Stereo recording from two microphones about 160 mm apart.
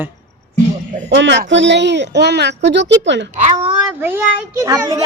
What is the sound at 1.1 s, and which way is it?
A woman's voice, 90° right.